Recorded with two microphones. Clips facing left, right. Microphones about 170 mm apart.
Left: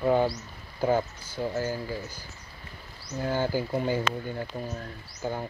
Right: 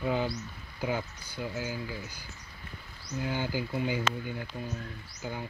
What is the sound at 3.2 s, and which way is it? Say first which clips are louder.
Speech: left 5 dB; 45° left (ahead or behind).